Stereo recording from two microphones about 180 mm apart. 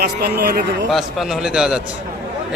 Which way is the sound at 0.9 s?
Centre (ahead or behind).